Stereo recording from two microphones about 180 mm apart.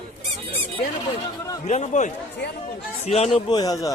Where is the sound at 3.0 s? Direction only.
35° left (ahead or behind).